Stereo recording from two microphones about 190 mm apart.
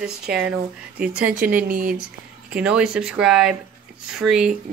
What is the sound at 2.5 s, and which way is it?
Speech, 5° right (ahead or behind).